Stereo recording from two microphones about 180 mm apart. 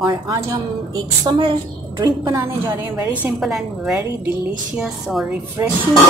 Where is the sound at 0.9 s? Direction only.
25° right (ahead or behind).